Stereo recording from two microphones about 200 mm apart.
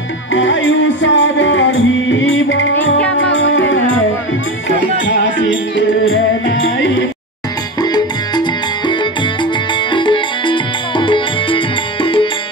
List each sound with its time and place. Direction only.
0.3 s music: 70° left (ahead or behind)
7.8 s music: 20° left (ahead or behind)
9.9 s music: 25° left (ahead or behind)